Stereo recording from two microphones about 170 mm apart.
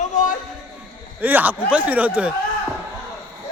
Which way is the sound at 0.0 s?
50° left (ahead or behind).